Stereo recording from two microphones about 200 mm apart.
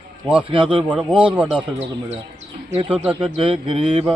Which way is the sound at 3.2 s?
25° right (ahead or behind).